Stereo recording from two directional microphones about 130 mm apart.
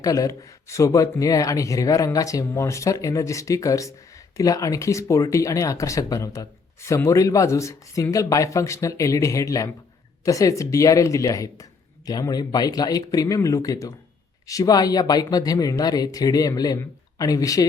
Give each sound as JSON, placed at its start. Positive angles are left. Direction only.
{"t": 0.0, "sound": "speech", "side_deg": 25}